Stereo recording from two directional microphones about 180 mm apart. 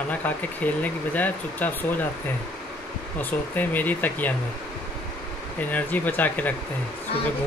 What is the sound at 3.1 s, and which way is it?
Speech, 10° left (ahead or behind).